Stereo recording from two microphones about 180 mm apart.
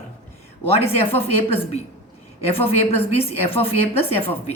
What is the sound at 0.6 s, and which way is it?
Speech, 35° left (ahead or behind).